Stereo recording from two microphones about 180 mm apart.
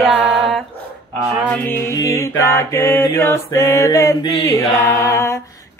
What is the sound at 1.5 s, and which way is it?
Mantra, 10° left (ahead or behind).